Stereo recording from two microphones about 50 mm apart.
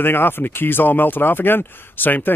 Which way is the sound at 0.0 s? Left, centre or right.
Left.